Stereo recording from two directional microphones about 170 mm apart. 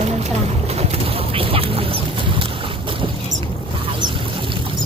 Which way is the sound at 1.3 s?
35° right (ahead or behind).